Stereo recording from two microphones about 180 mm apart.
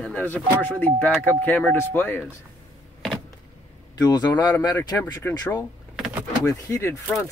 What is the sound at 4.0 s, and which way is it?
Speech, 20° left (ahead or behind).